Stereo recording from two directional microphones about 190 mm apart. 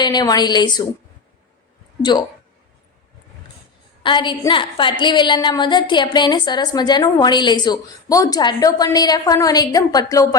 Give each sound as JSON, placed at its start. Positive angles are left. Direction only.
{"t": 0.0, "sound": "a woman's voice", "side_deg": 20}
{"t": 4.0, "sound": "a woman's voice", "side_deg": 25}